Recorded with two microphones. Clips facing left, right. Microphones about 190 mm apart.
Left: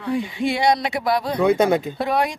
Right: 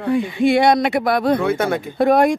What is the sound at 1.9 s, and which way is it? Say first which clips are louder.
Speech: right 8 dB; 50° right (ahead or behind).